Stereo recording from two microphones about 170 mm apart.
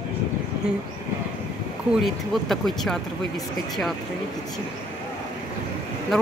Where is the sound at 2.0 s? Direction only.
Centre (ahead or behind).